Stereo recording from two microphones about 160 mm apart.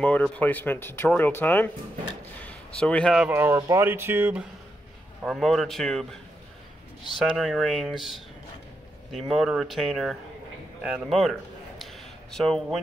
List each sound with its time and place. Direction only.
0.0 s speech: 10° left (ahead or behind)
2.8 s speech: 5° left (ahead or behind)
3.2 s speech: 15° right (ahead or behind)
5.2 s speech: centre (ahead or behind)
7.2 s speech: centre (ahead or behind)
11.8 s a sound: centre (ahead or behind)